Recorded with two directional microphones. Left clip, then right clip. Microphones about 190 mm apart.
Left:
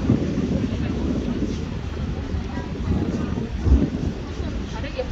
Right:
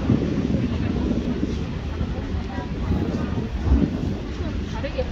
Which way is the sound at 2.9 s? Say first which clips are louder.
Even; centre (ahead or behind).